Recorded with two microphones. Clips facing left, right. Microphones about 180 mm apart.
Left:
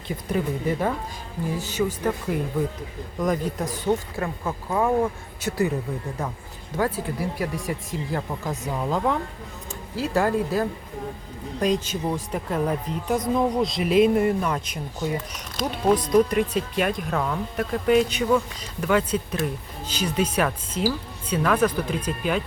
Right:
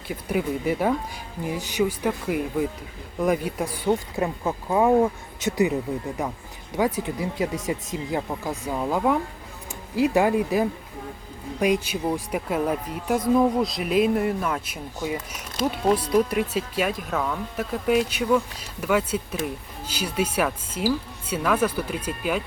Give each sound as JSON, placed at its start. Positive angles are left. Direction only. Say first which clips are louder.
{"t": 0.1, "sound": "speech", "louder": "even", "side_deg": -10}
{"t": 6.7, "sound": "speech", "louder": "right 1 dB", "side_deg": -15}